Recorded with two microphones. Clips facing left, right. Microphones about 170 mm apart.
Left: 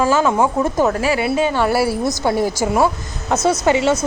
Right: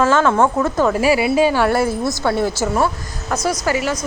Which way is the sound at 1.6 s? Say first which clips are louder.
Even; 5° left (ahead or behind).